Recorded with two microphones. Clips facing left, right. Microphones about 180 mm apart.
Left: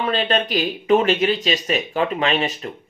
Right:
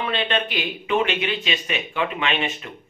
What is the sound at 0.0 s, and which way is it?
Speech, 40° left (ahead or behind).